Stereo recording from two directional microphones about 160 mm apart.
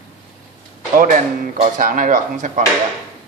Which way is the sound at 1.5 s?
55° right (ahead or behind).